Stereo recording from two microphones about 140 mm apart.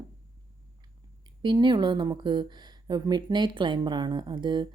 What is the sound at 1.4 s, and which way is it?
Speech, 35° right (ahead or behind).